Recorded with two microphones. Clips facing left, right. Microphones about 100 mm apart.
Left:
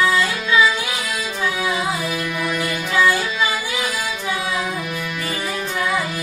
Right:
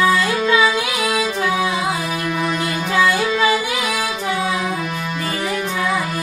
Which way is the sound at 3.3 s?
65° right (ahead or behind).